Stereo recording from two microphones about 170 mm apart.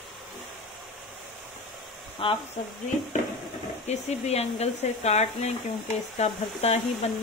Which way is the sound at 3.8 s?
40° left (ahead or behind).